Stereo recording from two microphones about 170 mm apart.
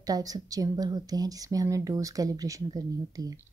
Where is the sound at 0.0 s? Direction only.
20° right (ahead or behind).